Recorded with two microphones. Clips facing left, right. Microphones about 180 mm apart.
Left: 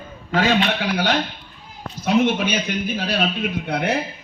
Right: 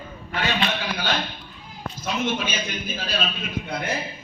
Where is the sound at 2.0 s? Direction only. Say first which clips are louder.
Left 8 dB; 65° left (ahead or behind).